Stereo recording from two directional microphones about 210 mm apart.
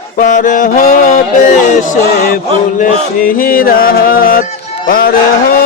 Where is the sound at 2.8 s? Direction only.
40° left (ahead or behind).